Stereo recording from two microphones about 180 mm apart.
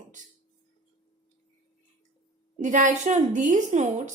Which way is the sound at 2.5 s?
45° right (ahead or behind).